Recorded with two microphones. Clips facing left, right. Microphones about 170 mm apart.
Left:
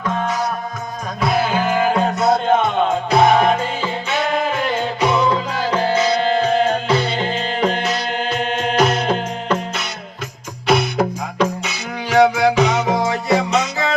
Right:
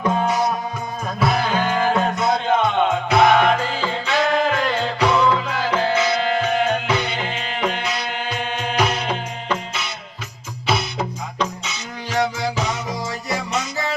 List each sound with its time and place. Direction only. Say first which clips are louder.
0.0 s music: right 2 dB; 10° right (ahead or behind)
1.2 s music: left 2 dB; centre (ahead or behind)
3.1 s music: left 2 dB; 30° left (ahead or behind)
10.7 s music: left 6 dB; 55° left (ahead or behind); by 13.9 s 70° left (ahead or behind)